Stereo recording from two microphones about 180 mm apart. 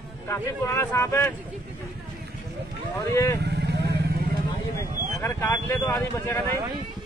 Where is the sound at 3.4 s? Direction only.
65° right (ahead or behind).